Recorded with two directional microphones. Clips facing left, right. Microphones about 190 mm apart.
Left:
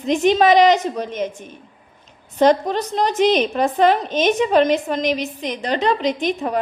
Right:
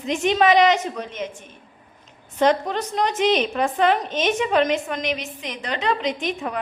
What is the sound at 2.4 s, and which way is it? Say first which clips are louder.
A woman's voice: left 4 dB; 35° left (ahead or behind).